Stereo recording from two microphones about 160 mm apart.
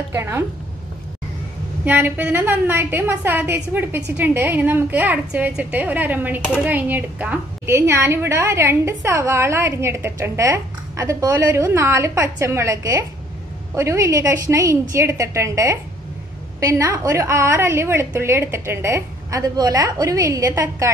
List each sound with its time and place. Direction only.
0.1 s a woman's voice: 15° right (ahead or behind)
1.9 s a woman's voice: 10° right (ahead or behind)